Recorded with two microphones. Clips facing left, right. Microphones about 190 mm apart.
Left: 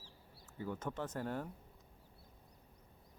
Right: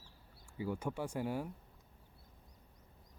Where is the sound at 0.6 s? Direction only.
10° right (ahead or behind).